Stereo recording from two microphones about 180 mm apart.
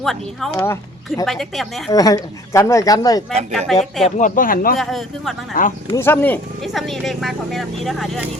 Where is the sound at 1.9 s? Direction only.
20° left (ahead or behind).